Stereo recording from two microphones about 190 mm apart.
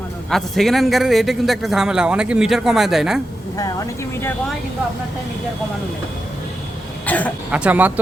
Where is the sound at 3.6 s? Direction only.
15° left (ahead or behind).